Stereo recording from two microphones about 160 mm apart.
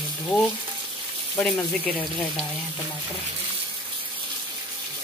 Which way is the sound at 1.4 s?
Centre (ahead or behind).